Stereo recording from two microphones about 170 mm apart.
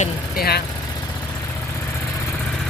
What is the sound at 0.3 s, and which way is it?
Vehicle, 65° left (ahead or behind).